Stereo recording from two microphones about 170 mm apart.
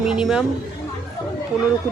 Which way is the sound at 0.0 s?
5° right (ahead or behind).